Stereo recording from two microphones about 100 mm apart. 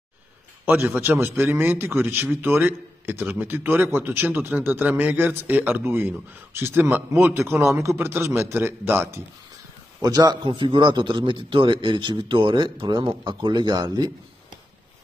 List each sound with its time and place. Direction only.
0.8 s a man's voice: 25° right (ahead or behind)
10.0 s a man's voice: 40° right (ahead or behind)
10.4 s a man's voice: 55° right (ahead or behind)